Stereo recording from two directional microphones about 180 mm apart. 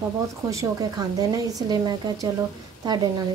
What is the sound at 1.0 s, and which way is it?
A woman's voice, 20° right (ahead or behind).